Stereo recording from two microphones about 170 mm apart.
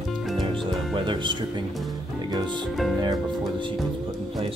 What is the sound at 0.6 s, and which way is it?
Speech, 30° right (ahead or behind).